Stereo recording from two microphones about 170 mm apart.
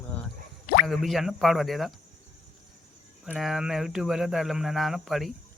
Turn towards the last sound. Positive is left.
turn(degrees=0)  # may be behind; listen again after turning